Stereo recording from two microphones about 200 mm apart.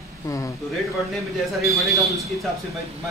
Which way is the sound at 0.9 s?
Centre (ahead or behind).